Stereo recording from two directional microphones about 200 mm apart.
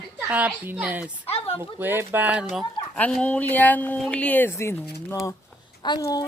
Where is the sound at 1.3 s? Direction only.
30° left (ahead or behind).